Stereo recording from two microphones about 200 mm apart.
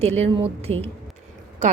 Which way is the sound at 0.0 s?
30° right (ahead or behind).